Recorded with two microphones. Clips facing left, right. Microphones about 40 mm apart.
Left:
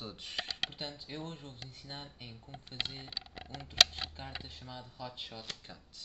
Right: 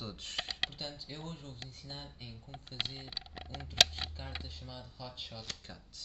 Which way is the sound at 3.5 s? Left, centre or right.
Left.